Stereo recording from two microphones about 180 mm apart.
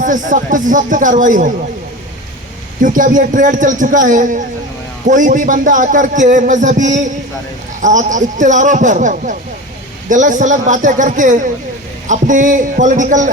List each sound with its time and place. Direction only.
0.0 s a man's voice: 45° right (ahead or behind)
2.8 s a man's voice: 45° right (ahead or behind)